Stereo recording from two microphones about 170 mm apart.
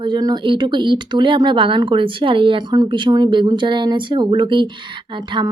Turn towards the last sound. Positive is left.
turn(degrees=-25)  # may be behind; listen again after turning